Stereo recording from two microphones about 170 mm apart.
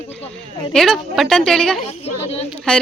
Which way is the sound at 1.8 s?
40° left (ahead or behind).